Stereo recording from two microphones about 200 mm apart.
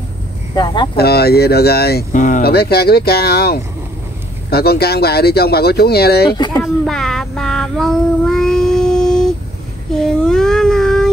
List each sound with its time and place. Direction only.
0.9 s speech: 50° left (ahead or behind)
6.3 s speech: 20° left (ahead or behind)
6.6 s child singing: centre (ahead or behind)
10.0 s a sound: 5° left (ahead or behind)